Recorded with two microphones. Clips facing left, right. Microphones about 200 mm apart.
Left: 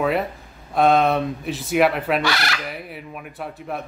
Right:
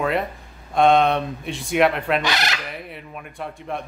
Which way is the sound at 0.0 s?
Centre (ahead or behind).